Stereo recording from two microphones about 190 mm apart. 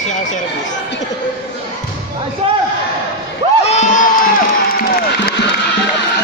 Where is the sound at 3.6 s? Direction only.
35° left (ahead or behind).